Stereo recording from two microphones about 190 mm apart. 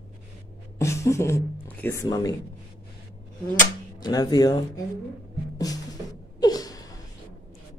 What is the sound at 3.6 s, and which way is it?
Speech, 20° left (ahead or behind).